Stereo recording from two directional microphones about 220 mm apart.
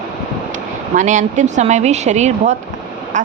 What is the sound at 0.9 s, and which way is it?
Speech, 35° right (ahead or behind).